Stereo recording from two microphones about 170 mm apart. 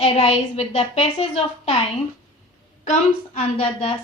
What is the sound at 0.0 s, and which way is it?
A woman's voice, 35° left (ahead or behind).